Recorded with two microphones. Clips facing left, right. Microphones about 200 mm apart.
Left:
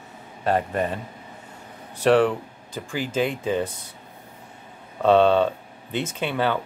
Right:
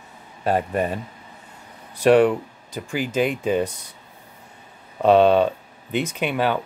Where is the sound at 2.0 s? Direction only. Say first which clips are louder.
Right 3 dB; 15° right (ahead or behind).